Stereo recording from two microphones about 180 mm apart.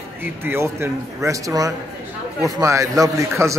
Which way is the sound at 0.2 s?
10° right (ahead or behind).